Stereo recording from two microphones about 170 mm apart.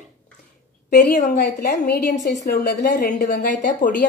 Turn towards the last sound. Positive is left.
turn(degrees=55)  # may be behind; listen again after turning